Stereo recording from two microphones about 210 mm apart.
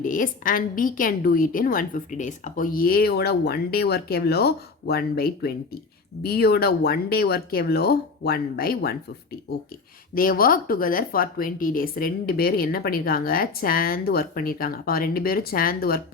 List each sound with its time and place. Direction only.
0.0 s a woman's voice: 40° left (ahead or behind)
10.2 s a woman's voice: 45° left (ahead or behind)